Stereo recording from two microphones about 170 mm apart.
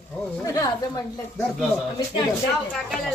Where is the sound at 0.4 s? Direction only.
20° left (ahead or behind).